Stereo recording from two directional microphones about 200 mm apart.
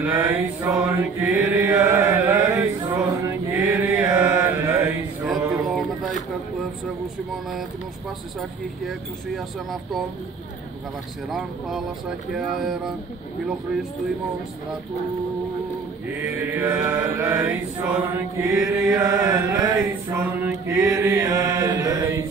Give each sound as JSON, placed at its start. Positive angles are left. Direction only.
{"t": 0.0, "sound": "mantra", "side_deg": -10}
{"t": 8.4, "sound": "speech", "side_deg": 0}
{"t": 11.2, "sound": "speech", "side_deg": 0}
{"t": 16.2, "sound": "mantra", "side_deg": -10}
{"t": 18.9, "sound": "mantra", "side_deg": -15}